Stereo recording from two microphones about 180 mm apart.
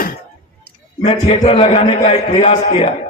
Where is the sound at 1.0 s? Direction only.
30° left (ahead or behind).